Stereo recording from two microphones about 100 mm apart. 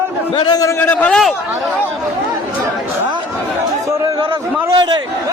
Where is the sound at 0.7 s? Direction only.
20° left (ahead or behind).